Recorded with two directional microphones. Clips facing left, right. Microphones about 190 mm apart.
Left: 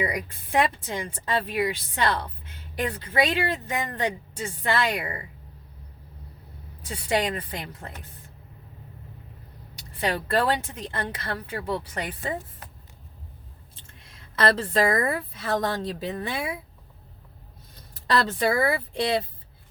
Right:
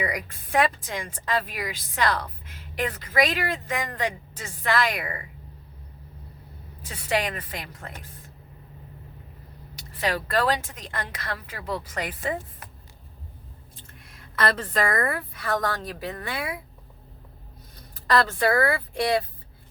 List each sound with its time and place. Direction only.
0.0 s speech: 25° left (ahead or behind)
6.9 s speech: 30° left (ahead or behind)
10.0 s speech: 30° left (ahead or behind)
14.0 s speech: 25° left (ahead or behind)
18.3 s speech: 20° left (ahead or behind)